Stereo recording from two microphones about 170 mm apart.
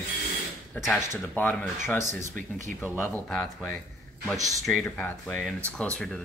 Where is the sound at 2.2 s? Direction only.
50° right (ahead or behind).